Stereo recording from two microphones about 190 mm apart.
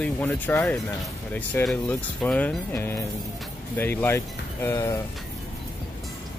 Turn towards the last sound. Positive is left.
turn(degrees=15)  # may be behind; listen again after turning